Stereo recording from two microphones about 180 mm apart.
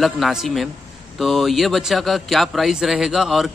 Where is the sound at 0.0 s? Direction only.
Centre (ahead or behind).